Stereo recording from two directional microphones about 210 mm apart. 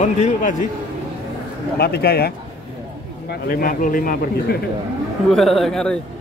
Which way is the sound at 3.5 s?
40° left (ahead or behind).